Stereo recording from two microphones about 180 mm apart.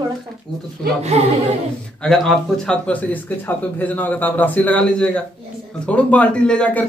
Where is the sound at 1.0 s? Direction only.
35° right (ahead or behind).